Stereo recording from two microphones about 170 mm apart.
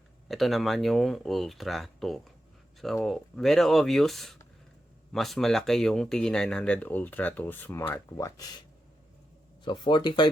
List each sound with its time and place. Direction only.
0.3 s speech: centre (ahead or behind); by 8.6 s 20° left (ahead or behind)
9.6 s speech: 30° left (ahead or behind)